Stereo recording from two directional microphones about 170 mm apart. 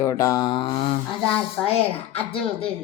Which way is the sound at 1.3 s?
5° left (ahead or behind).